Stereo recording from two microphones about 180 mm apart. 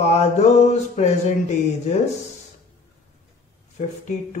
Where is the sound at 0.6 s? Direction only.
40° left (ahead or behind).